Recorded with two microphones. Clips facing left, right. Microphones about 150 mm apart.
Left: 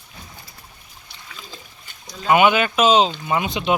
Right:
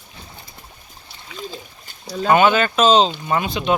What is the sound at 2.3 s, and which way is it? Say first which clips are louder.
Speech: right 1 dB; 15° left (ahead or behind).